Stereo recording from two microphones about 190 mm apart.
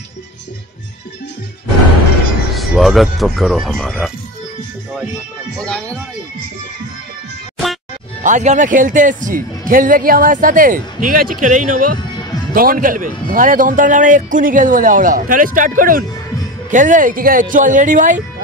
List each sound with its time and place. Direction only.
2.5 s speech: centre (ahead or behind)
5.7 s speech: 5° left (ahead or behind)
8.2 s speech: 40° right (ahead or behind)